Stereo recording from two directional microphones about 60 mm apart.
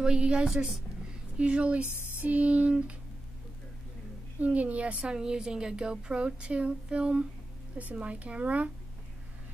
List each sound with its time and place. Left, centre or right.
0.0 s a woman's voice: centre
4.4 s a woman's voice: right